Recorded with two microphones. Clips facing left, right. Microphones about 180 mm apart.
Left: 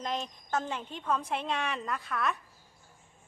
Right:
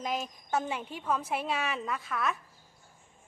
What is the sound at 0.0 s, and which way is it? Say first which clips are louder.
A woman's voice: right 1 dB; 5° right (ahead or behind).